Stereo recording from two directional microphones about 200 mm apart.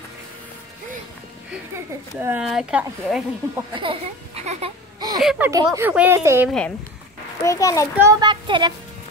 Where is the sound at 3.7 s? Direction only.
25° right (ahead or behind).